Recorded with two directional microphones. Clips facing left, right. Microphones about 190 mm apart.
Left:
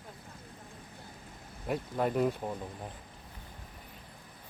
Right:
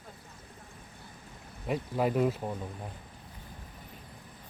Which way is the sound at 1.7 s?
5° right (ahead or behind).